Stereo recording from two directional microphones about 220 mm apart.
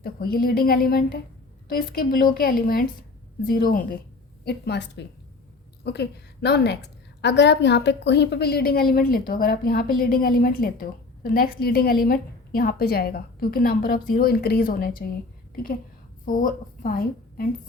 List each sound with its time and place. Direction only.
0.0 s a woman's voice: 45° left (ahead or behind)
16.2 s a woman's voice: 35° left (ahead or behind)